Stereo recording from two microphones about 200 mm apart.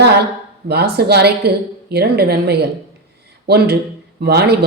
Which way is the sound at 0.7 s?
55° right (ahead or behind).